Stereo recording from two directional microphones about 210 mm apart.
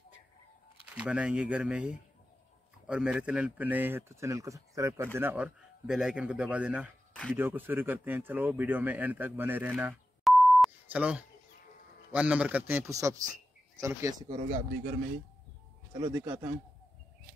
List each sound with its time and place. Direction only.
0.9 s speech: 5° right (ahead or behind)
16.1 s speech: 10° right (ahead or behind)